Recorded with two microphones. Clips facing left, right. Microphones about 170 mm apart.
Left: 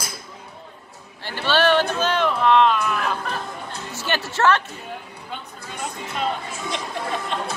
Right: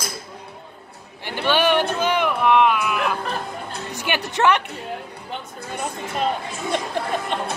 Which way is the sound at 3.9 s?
15° right (ahead or behind).